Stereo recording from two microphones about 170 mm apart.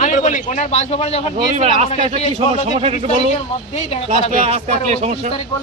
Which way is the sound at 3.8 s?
35° left (ahead or behind).